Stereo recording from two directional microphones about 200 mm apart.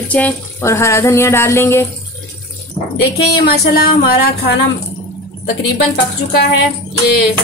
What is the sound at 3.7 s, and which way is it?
Speech, 50° left (ahead or behind).